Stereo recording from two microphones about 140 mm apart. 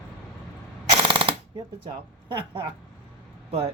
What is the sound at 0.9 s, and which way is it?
Machine gun, 35° right (ahead or behind).